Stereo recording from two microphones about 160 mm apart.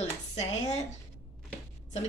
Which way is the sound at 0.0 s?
45° left (ahead or behind).